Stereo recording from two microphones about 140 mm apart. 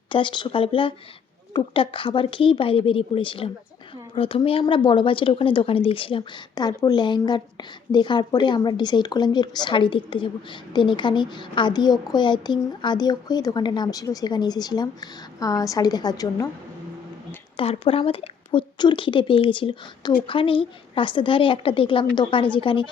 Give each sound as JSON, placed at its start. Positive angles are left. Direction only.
{"t": 0.1, "sound": "speech", "side_deg": 35}
{"t": 17.6, "sound": "speech", "side_deg": 40}